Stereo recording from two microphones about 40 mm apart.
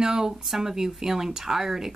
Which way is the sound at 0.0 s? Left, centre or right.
Centre.